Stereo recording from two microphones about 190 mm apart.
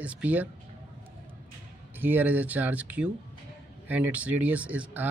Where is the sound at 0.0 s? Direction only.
5° right (ahead or behind).